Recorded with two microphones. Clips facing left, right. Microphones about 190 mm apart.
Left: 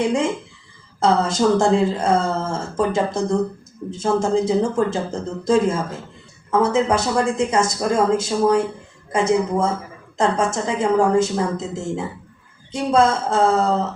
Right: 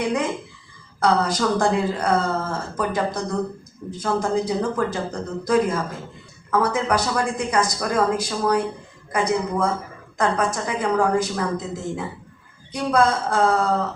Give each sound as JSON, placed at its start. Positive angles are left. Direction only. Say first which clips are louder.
{"t": 0.0, "sound": "speech", "louder": "left 3 dB", "side_deg": 25}